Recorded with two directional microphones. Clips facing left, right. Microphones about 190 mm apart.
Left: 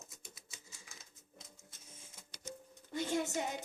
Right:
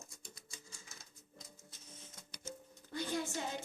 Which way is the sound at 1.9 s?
10° left (ahead or behind).